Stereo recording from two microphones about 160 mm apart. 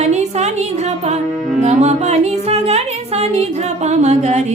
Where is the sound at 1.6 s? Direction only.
45° right (ahead or behind).